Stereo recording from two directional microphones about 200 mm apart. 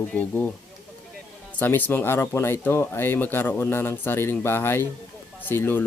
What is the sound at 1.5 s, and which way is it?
Speech, 10° left (ahead or behind).